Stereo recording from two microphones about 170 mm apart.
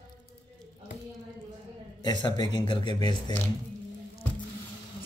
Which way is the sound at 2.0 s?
25° left (ahead or behind).